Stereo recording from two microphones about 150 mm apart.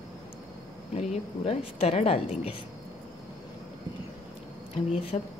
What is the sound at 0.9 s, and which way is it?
Speech, 45° left (ahead or behind).